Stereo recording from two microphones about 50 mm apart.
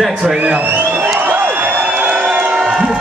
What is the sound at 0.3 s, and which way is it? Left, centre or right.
Speech, right.